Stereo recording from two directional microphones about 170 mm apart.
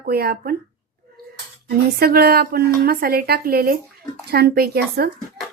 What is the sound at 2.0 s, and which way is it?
A woman's voice, 65° right (ahead or behind).